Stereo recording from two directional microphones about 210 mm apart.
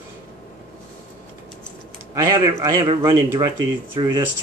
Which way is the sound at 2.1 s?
15° right (ahead or behind).